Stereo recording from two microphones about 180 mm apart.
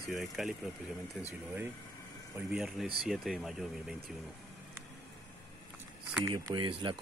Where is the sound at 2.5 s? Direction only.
Centre (ahead or behind).